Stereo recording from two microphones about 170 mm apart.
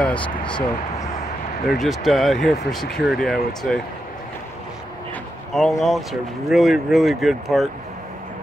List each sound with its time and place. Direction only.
0.0 s a sound: 5° left (ahead or behind)
0.4 s speech: 30° left (ahead or behind)
1.7 s speech: centre (ahead or behind)
5.5 s speech: centre (ahead or behind)